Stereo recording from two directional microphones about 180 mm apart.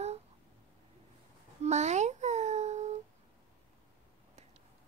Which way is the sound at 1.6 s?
40° right (ahead or behind).